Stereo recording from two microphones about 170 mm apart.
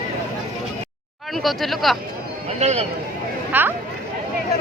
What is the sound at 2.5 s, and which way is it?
Speech, 40° right (ahead or behind).